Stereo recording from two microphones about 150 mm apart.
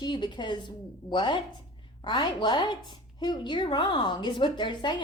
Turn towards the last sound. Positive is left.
turn(degrees=30)  # may be behind; listen again after turning